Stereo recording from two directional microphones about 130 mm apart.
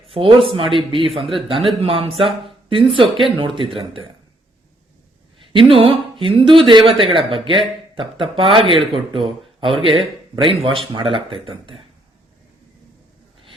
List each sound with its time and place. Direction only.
0.1 s speech: 40° right (ahead or behind)
5.4 s speech: 45° right (ahead or behind)